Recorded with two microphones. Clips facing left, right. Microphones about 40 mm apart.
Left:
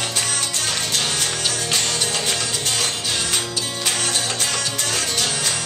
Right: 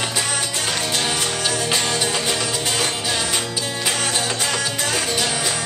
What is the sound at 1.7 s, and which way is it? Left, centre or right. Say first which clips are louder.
Music: right 2 dB; centre.